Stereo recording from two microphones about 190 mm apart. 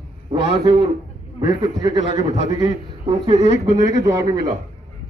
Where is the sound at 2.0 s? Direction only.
35° left (ahead or behind).